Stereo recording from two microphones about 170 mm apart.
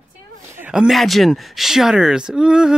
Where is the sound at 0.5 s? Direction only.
10° right (ahead or behind).